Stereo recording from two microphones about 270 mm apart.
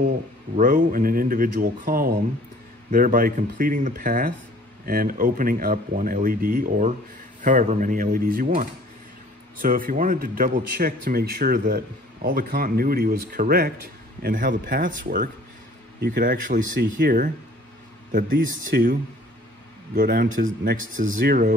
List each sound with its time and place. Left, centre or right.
0.6 s speech: right
9.6 s speech: right
20.0 s speech: right